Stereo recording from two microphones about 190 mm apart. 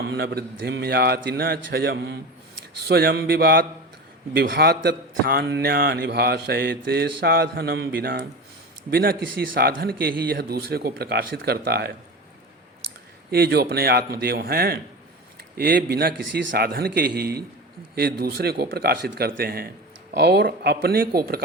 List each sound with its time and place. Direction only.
0.0 s a man's voice: 60° right (ahead or behind)
13.3 s a man's voice: 55° right (ahead or behind)